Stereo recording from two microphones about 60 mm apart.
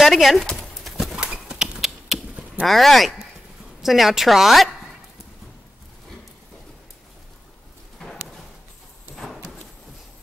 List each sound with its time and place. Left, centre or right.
0.0 s a woman's voice: centre
0.8 s clip-clop: centre
1.1 s clip-clop: centre
2.6 s a woman's voice: centre
9.1 s clip-clop: centre